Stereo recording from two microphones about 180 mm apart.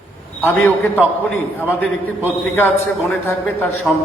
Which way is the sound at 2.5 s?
10° left (ahead or behind).